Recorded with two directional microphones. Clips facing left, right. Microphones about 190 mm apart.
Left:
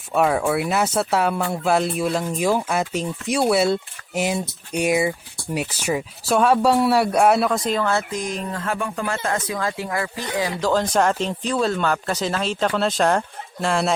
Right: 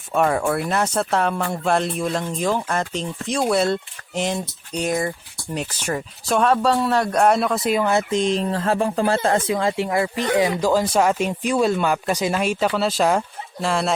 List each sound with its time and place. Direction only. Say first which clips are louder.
0.1 s speech: even; centre (ahead or behind); by 10.7 s 20° right (ahead or behind)
10.7 s speech: right 1 dB; 10° right (ahead or behind)